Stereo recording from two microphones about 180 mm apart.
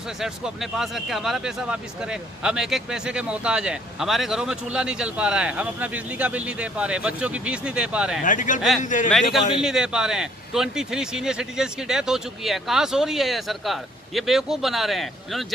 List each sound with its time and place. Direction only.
0.2 s speech: centre (ahead or behind)
8.2 s a man's voice: 45° left (ahead or behind)
9.1 s speech: centre (ahead or behind)